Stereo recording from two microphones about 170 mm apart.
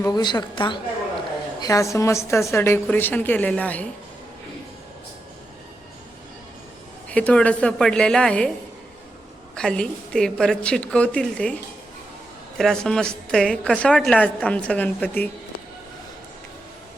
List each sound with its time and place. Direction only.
0.0 s a woman's voice: 25° left (ahead or behind); by 3.8 s 10° left (ahead or behind)
7.1 s a woman's voice: 10° left (ahead or behind)
9.6 s a woman's voice: 5° left (ahead or behind)